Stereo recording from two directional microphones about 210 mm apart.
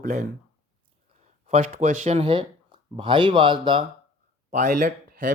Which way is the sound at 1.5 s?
35° right (ahead or behind).